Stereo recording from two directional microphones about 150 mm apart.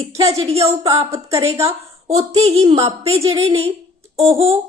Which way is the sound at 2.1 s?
40° right (ahead or behind).